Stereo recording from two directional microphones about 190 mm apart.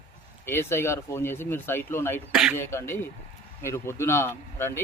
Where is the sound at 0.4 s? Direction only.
15° left (ahead or behind).